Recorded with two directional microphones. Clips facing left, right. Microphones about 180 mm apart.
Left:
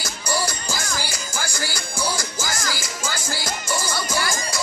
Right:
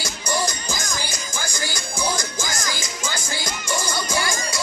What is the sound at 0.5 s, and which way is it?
Music, 10° left (ahead or behind).